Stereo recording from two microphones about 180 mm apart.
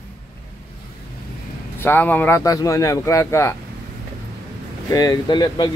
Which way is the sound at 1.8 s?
10° left (ahead or behind).